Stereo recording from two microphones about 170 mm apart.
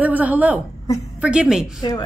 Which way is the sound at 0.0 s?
10° right (ahead or behind).